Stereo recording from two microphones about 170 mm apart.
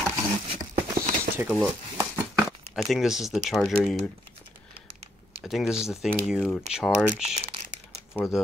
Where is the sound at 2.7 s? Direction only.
Centre (ahead or behind).